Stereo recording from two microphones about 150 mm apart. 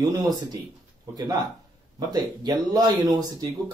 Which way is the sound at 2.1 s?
25° right (ahead or behind).